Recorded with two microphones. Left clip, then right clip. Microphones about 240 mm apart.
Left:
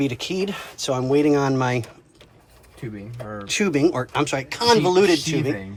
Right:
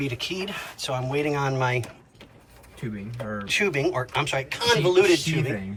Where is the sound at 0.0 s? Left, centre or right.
Centre.